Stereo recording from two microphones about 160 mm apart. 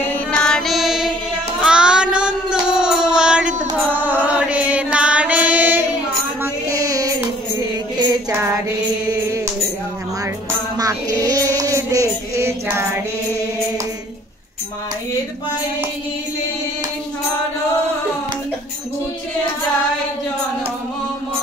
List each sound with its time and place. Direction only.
0.1 s music: 5° left (ahead or behind)
1.6 s child singing: 5° right (ahead or behind)
6.4 s child singing: 20° right (ahead or behind)
8.0 s music: 20° right (ahead or behind)
10.8 s a sound: 20° right (ahead or behind)